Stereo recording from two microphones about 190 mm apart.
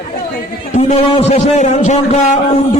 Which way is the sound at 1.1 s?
35° left (ahead or behind).